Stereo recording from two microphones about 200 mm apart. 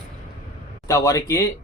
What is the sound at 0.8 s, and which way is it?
Speech, 15° left (ahead or behind).